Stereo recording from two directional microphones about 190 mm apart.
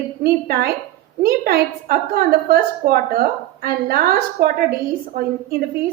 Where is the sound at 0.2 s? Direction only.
55° right (ahead or behind).